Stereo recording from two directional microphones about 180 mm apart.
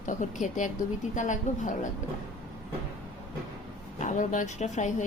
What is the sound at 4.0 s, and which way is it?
A woman's voice, 45° left (ahead or behind).